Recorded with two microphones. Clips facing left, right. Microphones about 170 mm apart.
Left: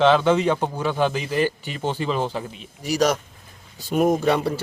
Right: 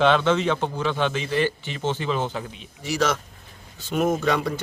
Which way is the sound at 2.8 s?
40° left (ahead or behind).